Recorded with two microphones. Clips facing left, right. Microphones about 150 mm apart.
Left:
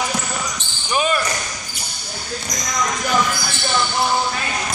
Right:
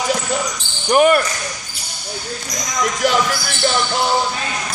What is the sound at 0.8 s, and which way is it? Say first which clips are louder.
Speech: right 8 dB; 60° right (ahead or behind).